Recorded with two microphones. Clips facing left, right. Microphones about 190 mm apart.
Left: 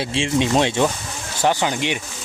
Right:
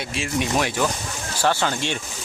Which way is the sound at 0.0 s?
30° left (ahead or behind).